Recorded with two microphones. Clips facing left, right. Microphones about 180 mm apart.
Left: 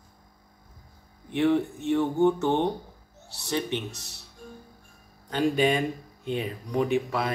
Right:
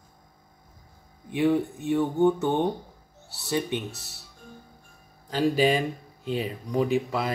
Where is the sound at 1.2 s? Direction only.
5° right (ahead or behind).